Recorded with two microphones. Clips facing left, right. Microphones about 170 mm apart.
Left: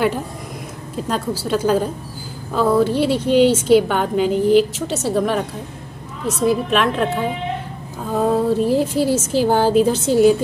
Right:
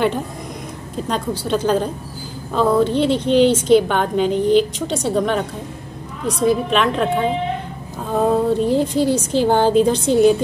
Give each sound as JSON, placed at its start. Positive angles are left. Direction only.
{"t": 1.0, "sound": "speech", "side_deg": 5}
{"t": 8.1, "sound": "speech", "side_deg": 0}